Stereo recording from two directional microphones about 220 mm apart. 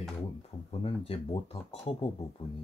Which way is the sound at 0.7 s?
25° left (ahead or behind).